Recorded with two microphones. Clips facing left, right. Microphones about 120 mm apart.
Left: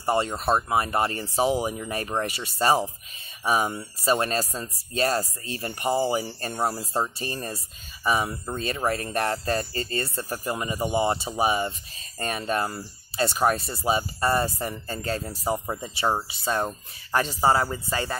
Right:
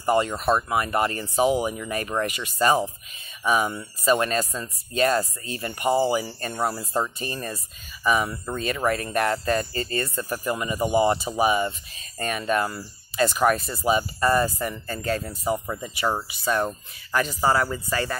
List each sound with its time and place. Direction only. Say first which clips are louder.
0.0 s speech: right 3 dB; 30° left (ahead or behind)